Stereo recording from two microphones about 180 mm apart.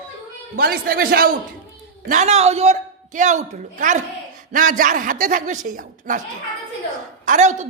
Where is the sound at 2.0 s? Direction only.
40° right (ahead or behind).